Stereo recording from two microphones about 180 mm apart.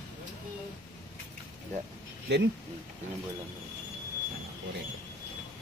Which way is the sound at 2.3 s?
70° right (ahead or behind).